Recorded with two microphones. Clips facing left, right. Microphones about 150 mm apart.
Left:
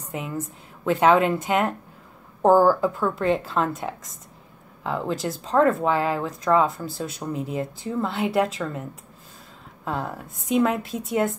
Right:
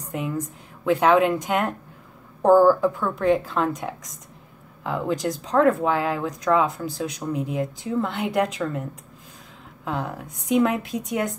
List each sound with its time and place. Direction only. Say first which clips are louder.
0.8 s speech: even; centre (ahead or behind)
2.4 s a woman's voice: right 1 dB; 15° left (ahead or behind)
9.8 s speech: even; centre (ahead or behind)